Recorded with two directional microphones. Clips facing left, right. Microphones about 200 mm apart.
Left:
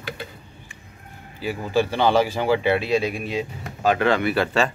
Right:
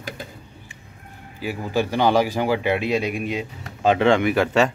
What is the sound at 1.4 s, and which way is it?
Speech, 10° right (ahead or behind).